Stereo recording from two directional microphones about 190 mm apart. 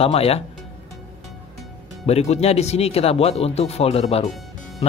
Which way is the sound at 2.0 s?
35° left (ahead or behind).